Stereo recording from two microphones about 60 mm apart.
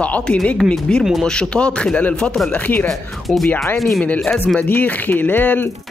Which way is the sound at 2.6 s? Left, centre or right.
Left.